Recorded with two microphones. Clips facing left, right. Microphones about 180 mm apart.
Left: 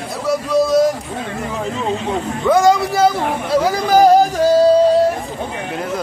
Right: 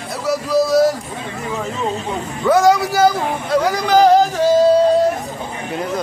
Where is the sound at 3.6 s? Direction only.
10° left (ahead or behind).